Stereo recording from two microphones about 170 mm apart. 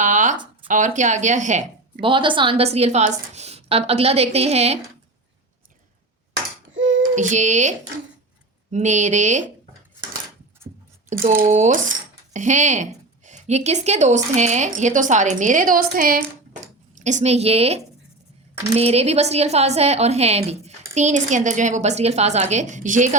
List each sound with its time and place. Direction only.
0.0 s a sound: 45° right (ahead or behind)
0.7 s a woman's voice: 45° right (ahead or behind)
2.0 s a woman's voice: 30° right (ahead or behind)
6.7 s child singing: 90° right
7.2 s a woman's voice: 45° right (ahead or behind)
11.3 s a woman's voice: 45° right (ahead or behind)
17.0 s a woman's voice: 45° right (ahead or behind)